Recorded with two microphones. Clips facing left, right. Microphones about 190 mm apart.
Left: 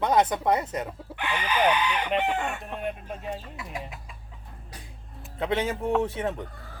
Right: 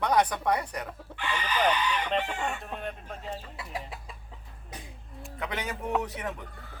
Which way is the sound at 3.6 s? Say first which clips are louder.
Left 1 dB; 35° right (ahead or behind).